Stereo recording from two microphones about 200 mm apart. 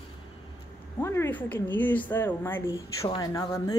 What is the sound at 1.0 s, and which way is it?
A woman's voice, 10° left (ahead or behind).